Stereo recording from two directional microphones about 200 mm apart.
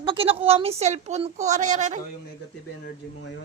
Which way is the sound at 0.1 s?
30° right (ahead or behind).